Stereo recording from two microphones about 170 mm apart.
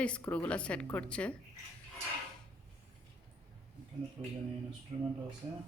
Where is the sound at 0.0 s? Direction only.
10° left (ahead or behind).